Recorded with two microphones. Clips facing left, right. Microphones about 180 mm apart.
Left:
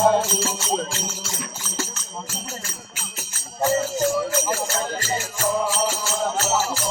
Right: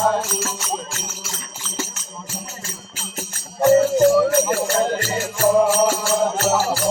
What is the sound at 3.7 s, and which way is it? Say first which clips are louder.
Jingle bell: right 9 dB; 55° right (ahead or behind).